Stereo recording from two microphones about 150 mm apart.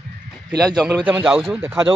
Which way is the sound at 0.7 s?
10° right (ahead or behind).